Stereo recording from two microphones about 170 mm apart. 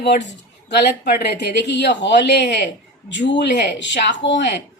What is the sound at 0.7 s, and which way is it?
Speech, 85° left.